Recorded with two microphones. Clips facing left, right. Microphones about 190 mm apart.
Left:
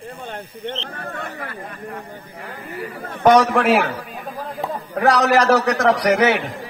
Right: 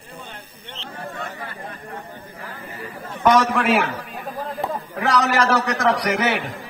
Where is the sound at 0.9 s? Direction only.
60° left (ahead or behind).